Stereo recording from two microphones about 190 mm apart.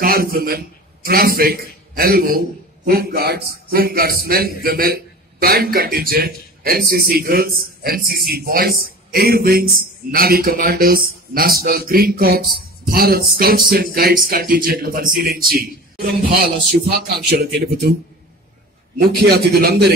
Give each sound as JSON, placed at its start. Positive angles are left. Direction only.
{"t": 0.0, "sound": "a man's voice", "side_deg": -50}
{"t": 18.9, "sound": "a man's voice", "side_deg": -55}